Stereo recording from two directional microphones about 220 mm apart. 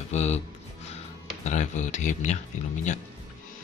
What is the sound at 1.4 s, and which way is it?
Speech, 35° left (ahead or behind).